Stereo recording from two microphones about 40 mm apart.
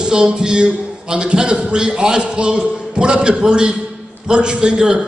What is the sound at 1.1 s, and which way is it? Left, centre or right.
A man's voice, right.